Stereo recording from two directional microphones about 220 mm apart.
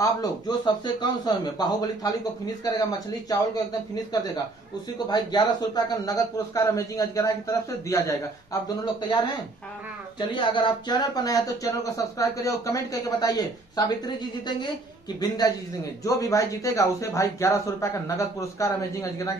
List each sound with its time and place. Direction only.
0.0 s speech: 15° left (ahead or behind)
4.9 s speech: 20° left (ahead or behind)
10.3 s speech: 20° left (ahead or behind)